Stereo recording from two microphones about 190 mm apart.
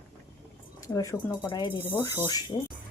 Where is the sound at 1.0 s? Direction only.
15° left (ahead or behind).